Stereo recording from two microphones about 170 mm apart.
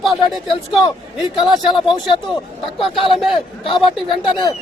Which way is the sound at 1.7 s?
25° left (ahead or behind).